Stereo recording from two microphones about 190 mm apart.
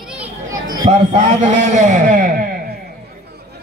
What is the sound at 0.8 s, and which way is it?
A man's voice, 40° right (ahead or behind).